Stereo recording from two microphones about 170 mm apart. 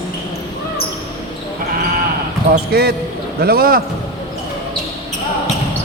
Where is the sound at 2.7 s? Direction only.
65° right (ahead or behind).